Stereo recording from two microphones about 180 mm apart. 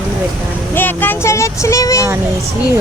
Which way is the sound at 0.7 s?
10° left (ahead or behind).